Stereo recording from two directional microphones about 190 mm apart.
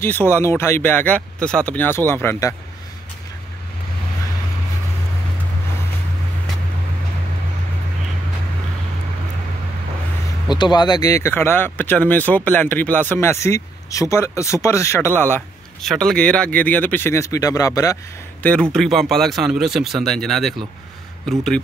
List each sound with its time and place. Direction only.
0.0 s speech: 10° left (ahead or behind)
10.5 s speech: 20° left (ahead or behind)
18.4 s speech: 5° left (ahead or behind)